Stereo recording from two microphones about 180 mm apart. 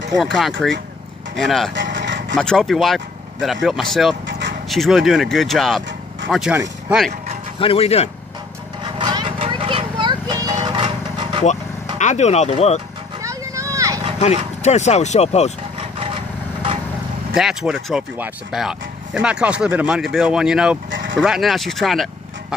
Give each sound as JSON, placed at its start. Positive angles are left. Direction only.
{"t": 0.2, "sound": "speech", "side_deg": 0}
{"t": 1.7, "sound": "a sound", "side_deg": -80}
{"t": 2.3, "sound": "speech", "side_deg": 0}
{"t": 4.3, "sound": "a sound", "side_deg": -75}
{"t": 4.6, "sound": "speech", "side_deg": 0}
{"t": 7.5, "sound": "speech", "side_deg": 30}
{"t": 8.9, "sound": "wood", "side_deg": -25}
{"t": 9.5, "sound": "a sound", "side_deg": -30}
{"t": 12.0, "sound": "speech", "side_deg": 40}
{"t": 13.2, "sound": "a sound", "side_deg": -15}
{"t": 14.2, "sound": "speech", "side_deg": 40}
{"t": 17.3, "sound": "speech", "side_deg": -5}
{"t": 20.9, "sound": "livestock", "side_deg": -90}
{"t": 21.2, "sound": "speech", "side_deg": 0}